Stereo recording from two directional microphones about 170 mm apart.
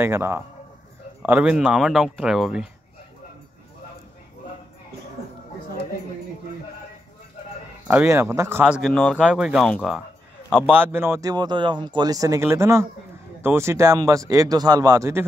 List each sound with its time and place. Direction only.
0.0 s a man's voice: 15° right (ahead or behind)
7.9 s speech: 15° right (ahead or behind); by 10.0 s centre (ahead or behind)
10.7 s speech: 10° right (ahead or behind)